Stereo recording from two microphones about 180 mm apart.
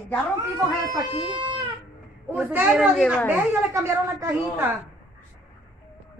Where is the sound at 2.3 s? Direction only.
10° right (ahead or behind).